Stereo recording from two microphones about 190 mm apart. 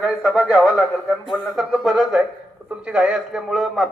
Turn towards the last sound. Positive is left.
turn(degrees=0)  # may be behind; listen again after turning